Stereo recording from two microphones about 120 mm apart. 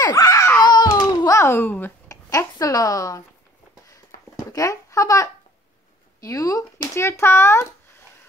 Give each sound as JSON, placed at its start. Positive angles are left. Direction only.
{"t": 0.0, "sound": "a sound", "side_deg": 30}
{"t": 2.0, "sound": "a woman's voice", "side_deg": 30}
{"t": 4.5, "sound": "a child's voice", "side_deg": 30}